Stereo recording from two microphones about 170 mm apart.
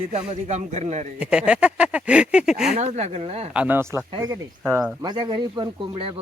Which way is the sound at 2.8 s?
40° right (ahead or behind).